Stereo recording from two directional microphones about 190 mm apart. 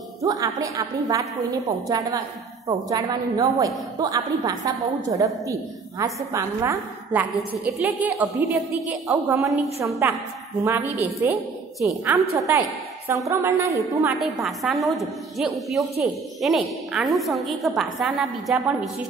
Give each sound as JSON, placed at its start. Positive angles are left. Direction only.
{"t": 0.2, "sound": "a woman's voice", "side_deg": -15}
{"t": 14.2, "sound": "a woman's voice", "side_deg": 0}